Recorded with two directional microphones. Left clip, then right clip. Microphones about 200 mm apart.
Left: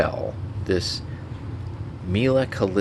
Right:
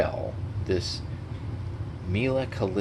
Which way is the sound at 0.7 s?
35° left (ahead or behind).